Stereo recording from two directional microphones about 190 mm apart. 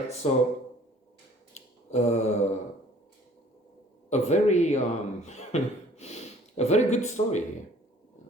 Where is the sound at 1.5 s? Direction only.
35° left (ahead or behind).